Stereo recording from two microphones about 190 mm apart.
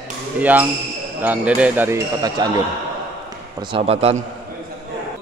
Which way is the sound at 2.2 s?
20° right (ahead or behind).